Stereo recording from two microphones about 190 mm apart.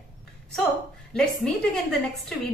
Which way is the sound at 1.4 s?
5° left (ahead or behind).